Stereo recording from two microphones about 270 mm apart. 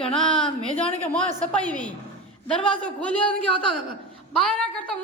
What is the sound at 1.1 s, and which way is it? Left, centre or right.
A woman's voice, centre.